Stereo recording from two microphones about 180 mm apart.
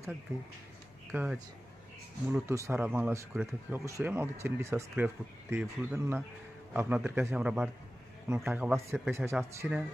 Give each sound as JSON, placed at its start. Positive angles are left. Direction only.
{"t": 1.1, "sound": "speech", "side_deg": -10}